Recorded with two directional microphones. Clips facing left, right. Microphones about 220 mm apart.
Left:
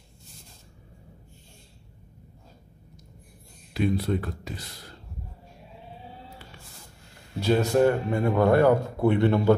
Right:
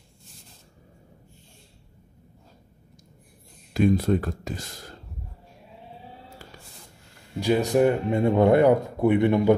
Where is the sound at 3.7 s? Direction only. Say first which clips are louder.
Right 5 dB; 45° right (ahead or behind).